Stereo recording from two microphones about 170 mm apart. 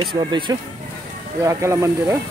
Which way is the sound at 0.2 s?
25° right (ahead or behind).